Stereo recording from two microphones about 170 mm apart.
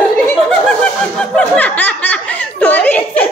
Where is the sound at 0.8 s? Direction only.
5° left (ahead or behind).